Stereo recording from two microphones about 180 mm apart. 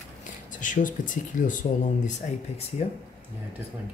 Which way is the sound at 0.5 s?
45° left (ahead or behind).